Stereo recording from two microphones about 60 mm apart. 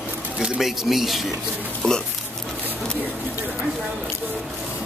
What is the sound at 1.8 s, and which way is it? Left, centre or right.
Speech, centre.